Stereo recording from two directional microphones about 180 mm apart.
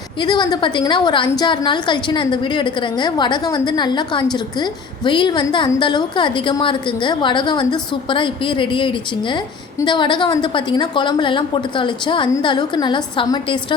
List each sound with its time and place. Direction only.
0.2 s a woman's voice: 25° left (ahead or behind)